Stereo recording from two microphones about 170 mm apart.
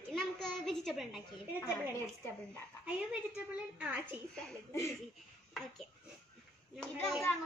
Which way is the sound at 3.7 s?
10° right (ahead or behind).